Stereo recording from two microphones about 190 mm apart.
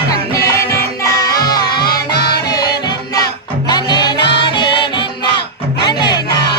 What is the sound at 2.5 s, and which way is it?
Music, 20° left (ahead or behind).